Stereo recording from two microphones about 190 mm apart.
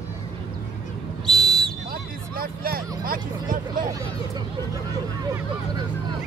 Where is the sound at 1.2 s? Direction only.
Centre (ahead or behind).